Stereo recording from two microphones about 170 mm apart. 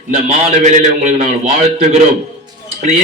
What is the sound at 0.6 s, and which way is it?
A man's voice, 45° right (ahead or behind).